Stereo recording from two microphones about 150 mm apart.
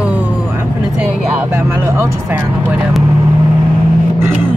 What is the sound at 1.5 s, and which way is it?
Speech, 15° right (ahead or behind).